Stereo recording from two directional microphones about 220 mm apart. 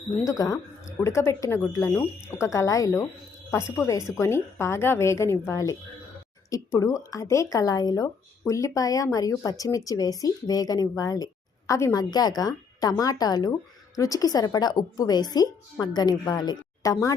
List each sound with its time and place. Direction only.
0.3 s speech: 15° left (ahead or behind)